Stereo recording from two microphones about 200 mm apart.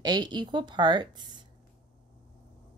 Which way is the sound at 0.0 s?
20° right (ahead or behind).